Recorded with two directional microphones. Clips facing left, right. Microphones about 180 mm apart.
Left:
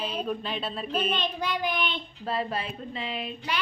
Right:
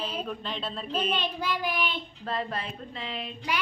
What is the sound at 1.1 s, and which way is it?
Speech, 5° right (ahead or behind).